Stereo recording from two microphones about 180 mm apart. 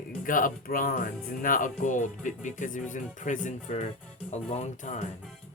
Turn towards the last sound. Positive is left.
turn(degrees=40)  # may be behind; listen again after turning